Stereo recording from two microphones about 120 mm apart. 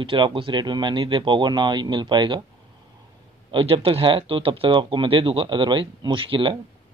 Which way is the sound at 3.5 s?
45° right (ahead or behind).